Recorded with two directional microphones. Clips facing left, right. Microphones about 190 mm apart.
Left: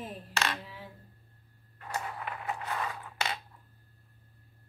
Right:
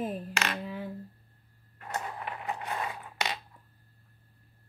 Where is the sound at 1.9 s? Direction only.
20° right (ahead or behind).